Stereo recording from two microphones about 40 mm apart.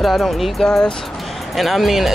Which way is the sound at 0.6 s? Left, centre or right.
Centre.